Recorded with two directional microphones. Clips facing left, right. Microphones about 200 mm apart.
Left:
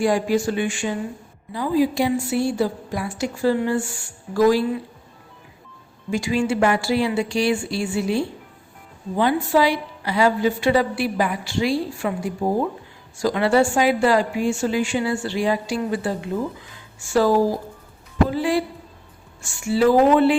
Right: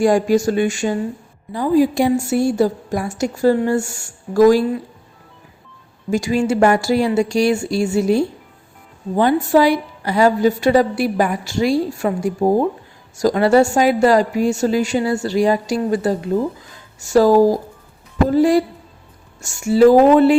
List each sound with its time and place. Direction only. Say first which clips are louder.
0.0 s a woman's voice: right 5 dB; 45° right (ahead or behind)
6.1 s a woman's voice: right 4 dB; 40° right (ahead or behind)